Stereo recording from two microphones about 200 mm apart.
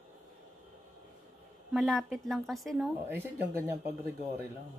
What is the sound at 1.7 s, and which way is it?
Speech, centre (ahead or behind).